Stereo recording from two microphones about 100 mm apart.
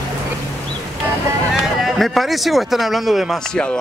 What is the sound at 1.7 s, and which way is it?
Speech, centre (ahead or behind).